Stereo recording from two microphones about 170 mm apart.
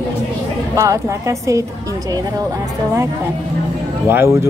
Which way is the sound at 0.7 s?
15° right (ahead or behind).